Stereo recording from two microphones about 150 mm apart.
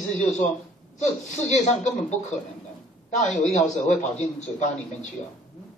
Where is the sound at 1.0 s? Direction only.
50° left (ahead or behind).